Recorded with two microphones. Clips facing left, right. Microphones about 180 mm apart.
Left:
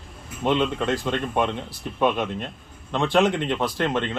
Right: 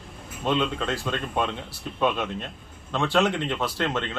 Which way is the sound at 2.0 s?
15° left (ahead or behind).